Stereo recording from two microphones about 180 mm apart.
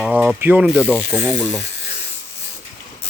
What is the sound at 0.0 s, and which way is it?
Ratchet, 5° right (ahead or behind).